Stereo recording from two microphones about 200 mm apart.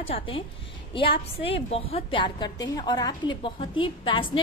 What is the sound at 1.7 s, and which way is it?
A woman's voice, 30° left (ahead or behind).